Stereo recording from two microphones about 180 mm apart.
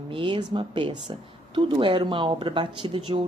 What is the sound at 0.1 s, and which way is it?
A woman's voice, 25° right (ahead or behind).